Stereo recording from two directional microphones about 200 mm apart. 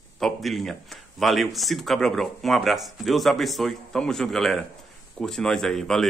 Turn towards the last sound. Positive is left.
turn(degrees=0)  # may be behind; listen again after turning